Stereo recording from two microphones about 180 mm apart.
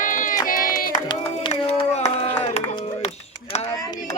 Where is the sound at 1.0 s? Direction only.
25° left (ahead or behind).